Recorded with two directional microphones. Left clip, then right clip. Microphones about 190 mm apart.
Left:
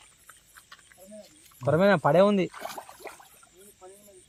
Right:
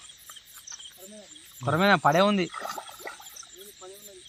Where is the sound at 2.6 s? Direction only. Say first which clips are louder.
Right 3 dB; 25° left (ahead or behind).